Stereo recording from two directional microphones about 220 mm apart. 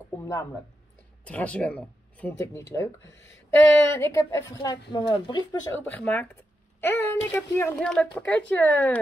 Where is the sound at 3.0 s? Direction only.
60° left (ahead or behind).